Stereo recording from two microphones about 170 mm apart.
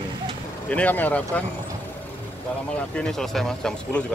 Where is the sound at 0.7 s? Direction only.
10° left (ahead or behind).